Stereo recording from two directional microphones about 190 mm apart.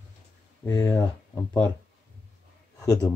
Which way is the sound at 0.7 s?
20° left (ahead or behind).